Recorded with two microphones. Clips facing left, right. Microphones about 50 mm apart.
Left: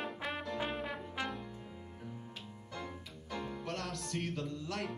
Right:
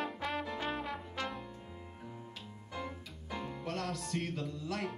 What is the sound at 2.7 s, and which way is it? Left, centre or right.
Music, centre.